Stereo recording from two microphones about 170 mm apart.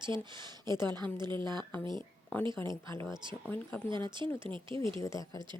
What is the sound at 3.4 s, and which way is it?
Speech, 10° left (ahead or behind).